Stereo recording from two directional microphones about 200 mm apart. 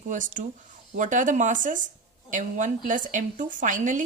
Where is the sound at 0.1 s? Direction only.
40° right (ahead or behind).